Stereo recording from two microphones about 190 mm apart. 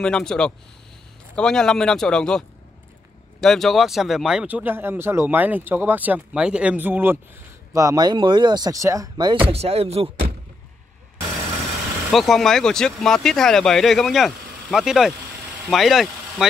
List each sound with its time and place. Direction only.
0.0 s speech: 5° left (ahead or behind); by 9.4 s 20° right (ahead or behind)
9.5 s speech: 30° right (ahead or behind)
12.1 s speech: centre (ahead or behind)